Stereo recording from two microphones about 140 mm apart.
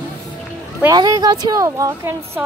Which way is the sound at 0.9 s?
25° right (ahead or behind).